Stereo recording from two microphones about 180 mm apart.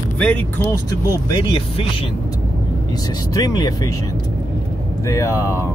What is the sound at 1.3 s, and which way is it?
Speech, 30° left (ahead or behind).